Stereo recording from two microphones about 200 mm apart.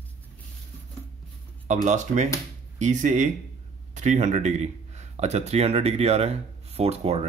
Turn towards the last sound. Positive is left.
turn(degrees=-30)  # may be behind; listen again after turning